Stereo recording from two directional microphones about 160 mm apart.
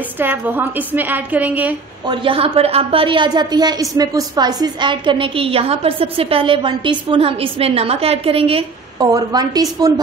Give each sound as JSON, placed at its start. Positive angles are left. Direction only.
{"t": 0.2, "sound": "a woman's voice", "side_deg": -10}
{"t": 2.0, "sound": "a woman's voice", "side_deg": -35}
{"t": 9.0, "sound": "a woman's voice", "side_deg": -25}